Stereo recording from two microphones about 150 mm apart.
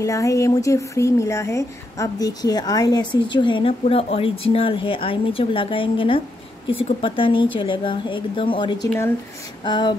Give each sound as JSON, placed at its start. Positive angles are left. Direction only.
{"t": 0.0, "sound": "speech", "side_deg": 20}